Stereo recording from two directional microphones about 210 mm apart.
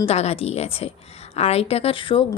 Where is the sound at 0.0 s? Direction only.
30° left (ahead or behind).